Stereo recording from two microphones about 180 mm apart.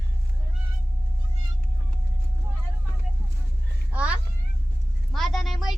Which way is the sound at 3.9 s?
5° right (ahead or behind).